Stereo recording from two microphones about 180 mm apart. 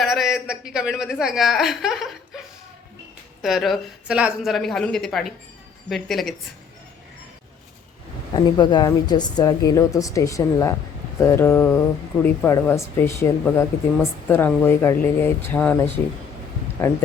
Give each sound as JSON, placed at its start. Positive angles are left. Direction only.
{"t": 0.0, "sound": "a woman's voice", "side_deg": 0}
{"t": 3.4, "sound": "a woman's voice", "side_deg": 0}
{"t": 8.3, "sound": "a woman's voice", "side_deg": 25}